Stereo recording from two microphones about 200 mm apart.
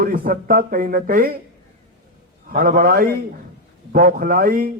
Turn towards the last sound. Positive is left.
turn(degrees=-45)  # may be behind; listen again after turning